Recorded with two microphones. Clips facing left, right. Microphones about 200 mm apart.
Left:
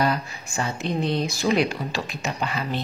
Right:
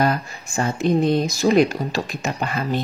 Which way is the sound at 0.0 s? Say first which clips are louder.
Right 3 dB; 50° right (ahead or behind).